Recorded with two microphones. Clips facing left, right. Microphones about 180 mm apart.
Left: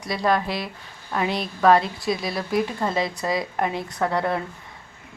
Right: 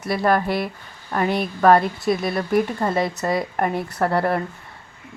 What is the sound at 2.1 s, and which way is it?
Speech, 55° right (ahead or behind).